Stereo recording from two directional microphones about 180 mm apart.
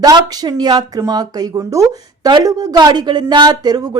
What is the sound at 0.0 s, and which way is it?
Speech, 20° right (ahead or behind).